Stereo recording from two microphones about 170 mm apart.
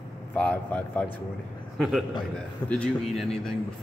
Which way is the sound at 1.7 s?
Centre (ahead or behind).